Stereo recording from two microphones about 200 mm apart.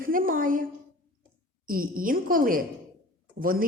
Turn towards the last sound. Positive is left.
turn(degrees=-45)  # may be behind; listen again after turning